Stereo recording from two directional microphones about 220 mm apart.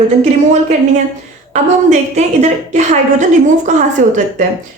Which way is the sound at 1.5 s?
30° right (ahead or behind).